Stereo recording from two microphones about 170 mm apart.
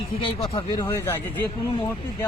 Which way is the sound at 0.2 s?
25° left (ahead or behind).